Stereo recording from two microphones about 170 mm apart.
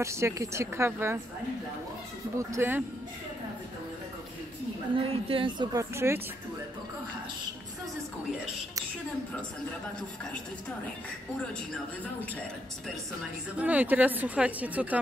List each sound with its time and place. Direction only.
0.0 s speech: 15° right (ahead or behind)
2.3 s speech: 15° right (ahead or behind)
4.9 s a woman's voice: 30° right (ahead or behind); by 6.2 s 15° right (ahead or behind)
13.6 s speech: 10° right (ahead or behind)